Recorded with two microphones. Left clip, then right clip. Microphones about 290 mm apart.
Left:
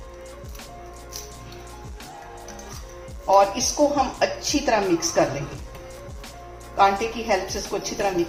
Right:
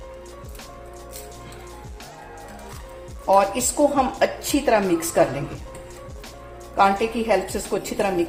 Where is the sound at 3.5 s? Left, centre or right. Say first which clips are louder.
Right 1 dB; right.